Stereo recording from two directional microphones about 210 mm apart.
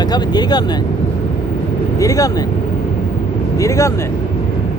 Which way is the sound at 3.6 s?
15° left (ahead or behind).